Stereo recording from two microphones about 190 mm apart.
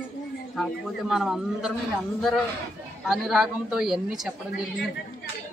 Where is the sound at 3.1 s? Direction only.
Centre (ahead or behind).